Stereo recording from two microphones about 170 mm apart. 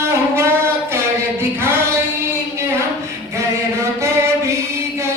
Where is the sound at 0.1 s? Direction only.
15° right (ahead or behind).